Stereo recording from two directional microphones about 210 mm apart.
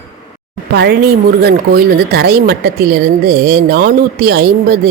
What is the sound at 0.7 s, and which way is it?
Speech, 50° right (ahead or behind).